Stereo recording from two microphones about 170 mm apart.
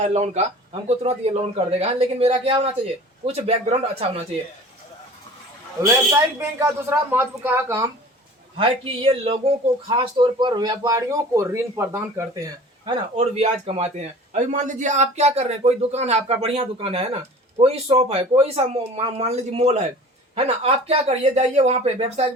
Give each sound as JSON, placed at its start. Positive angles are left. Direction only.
{"t": 0.0, "sound": "a man's voice", "side_deg": -40}
{"t": 5.8, "sound": "a man's voice", "side_deg": -20}
{"t": 8.5, "sound": "a man's voice", "side_deg": -30}
{"t": 13.1, "sound": "a man's voice", "side_deg": -35}